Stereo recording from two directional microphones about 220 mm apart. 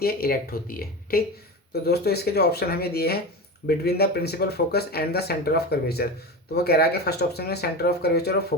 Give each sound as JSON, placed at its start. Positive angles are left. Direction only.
{"t": 0.0, "sound": "speech", "side_deg": 45}